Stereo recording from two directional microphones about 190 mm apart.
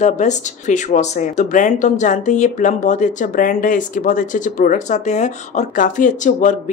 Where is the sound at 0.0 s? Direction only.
40° left (ahead or behind).